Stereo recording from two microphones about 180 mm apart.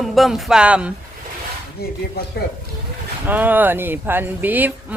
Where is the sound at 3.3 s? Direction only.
10° right (ahead or behind).